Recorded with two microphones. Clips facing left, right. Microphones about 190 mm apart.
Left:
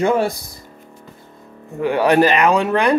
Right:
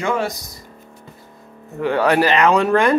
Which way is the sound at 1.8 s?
15° left (ahead or behind).